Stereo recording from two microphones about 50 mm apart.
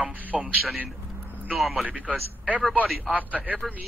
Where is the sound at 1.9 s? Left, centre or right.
Right.